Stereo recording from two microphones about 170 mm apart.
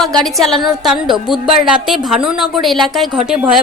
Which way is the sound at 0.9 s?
Centre (ahead or behind).